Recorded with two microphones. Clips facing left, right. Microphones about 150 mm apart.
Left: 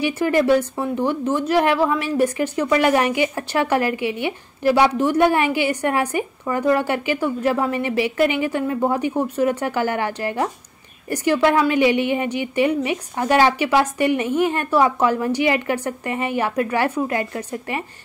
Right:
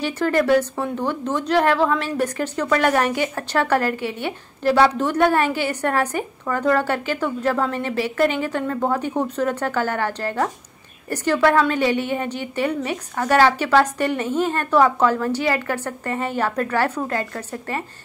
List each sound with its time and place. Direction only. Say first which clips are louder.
0.0 s a woman's voice: left 2 dB; 10° left (ahead or behind)